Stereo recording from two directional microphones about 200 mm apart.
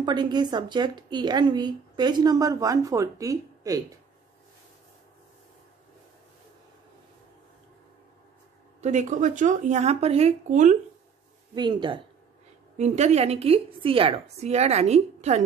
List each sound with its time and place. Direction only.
0.0 s speech: 20° right (ahead or behind)
8.8 s a woman's voice: 35° right (ahead or behind)
11.5 s speech: 20° right (ahead or behind)
12.7 s a woman's voice: 35° right (ahead or behind)